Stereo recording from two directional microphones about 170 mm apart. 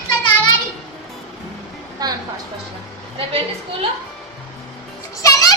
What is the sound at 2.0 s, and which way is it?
Music, 25° right (ahead or behind).